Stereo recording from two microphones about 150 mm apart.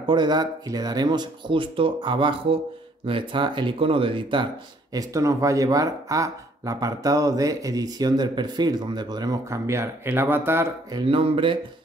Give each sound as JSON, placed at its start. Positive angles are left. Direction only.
{"t": 0.0, "sound": "speech", "side_deg": -30}
{"t": 4.9, "sound": "speech", "side_deg": -20}
{"t": 10.9, "sound": "speech", "side_deg": -35}